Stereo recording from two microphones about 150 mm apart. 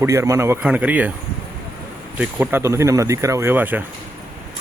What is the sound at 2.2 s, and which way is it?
Speech, 10° right (ahead or behind).